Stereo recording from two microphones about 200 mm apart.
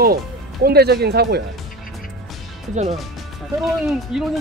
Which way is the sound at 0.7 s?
50° right (ahead or behind).